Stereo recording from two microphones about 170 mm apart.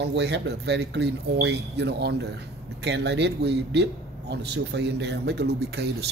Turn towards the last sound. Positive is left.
turn(degrees=-75)  # may be behind; listen again after turning